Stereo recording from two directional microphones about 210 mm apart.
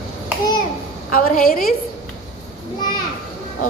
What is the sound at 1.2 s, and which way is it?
Speech, 45° left (ahead or behind).